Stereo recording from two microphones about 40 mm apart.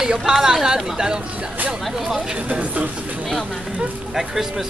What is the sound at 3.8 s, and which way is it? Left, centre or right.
Speech, centre.